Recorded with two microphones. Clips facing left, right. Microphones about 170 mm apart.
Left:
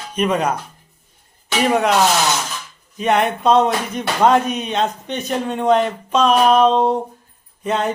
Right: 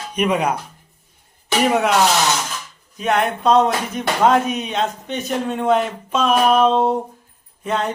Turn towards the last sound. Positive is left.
turn(degrees=0)  # may be behind; listen again after turning